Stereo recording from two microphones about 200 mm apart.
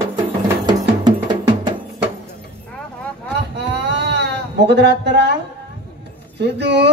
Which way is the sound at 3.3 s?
55° right (ahead or behind).